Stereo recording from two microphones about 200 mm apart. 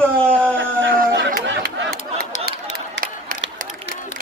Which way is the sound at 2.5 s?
50° right (ahead or behind).